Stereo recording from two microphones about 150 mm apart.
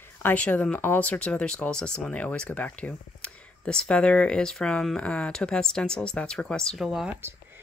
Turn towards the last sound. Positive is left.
turn(degrees=-5)  # may be behind; listen again after turning